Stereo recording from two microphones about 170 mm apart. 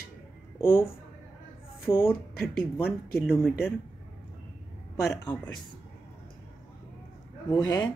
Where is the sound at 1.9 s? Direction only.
15° left (ahead or behind).